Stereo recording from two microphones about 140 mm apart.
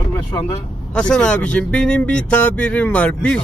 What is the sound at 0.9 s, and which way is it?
Speech, 5° left (ahead or behind).